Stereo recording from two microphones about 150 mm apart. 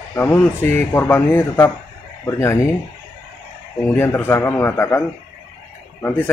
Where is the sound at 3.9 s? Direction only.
15° left (ahead or behind).